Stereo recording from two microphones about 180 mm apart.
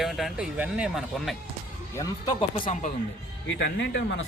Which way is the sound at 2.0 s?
20° left (ahead or behind).